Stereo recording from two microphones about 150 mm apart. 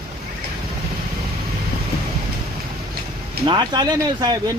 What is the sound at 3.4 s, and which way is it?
Speech, 30° right (ahead or behind).